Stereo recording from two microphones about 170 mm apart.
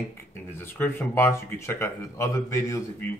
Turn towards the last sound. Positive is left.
turn(degrees=15)  # may be behind; listen again after turning